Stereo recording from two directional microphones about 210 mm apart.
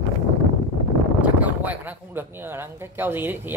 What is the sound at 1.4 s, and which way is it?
Speech, 10° right (ahead or behind).